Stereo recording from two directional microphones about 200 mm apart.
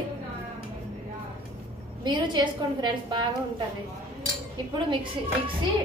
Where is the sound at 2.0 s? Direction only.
25° right (ahead or behind).